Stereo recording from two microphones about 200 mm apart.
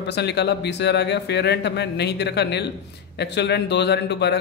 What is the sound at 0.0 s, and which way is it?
Speech, 60° left (ahead or behind).